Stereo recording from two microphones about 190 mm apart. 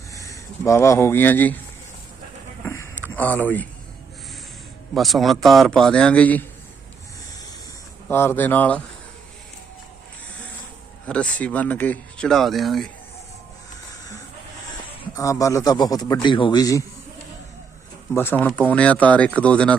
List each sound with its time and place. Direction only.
0.1 s speech: 15° left (ahead or behind)
2.6 s a sound: 15° left (ahead or behind)
3.2 s speech: 10° left (ahead or behind)
4.9 s speech: centre (ahead or behind)
8.0 s speech: 10° left (ahead or behind)
11.1 s speech: 5° left (ahead or behind)
15.1 s a man's voice: 15° left (ahead or behind)
18.1 s speech: 10° left (ahead or behind)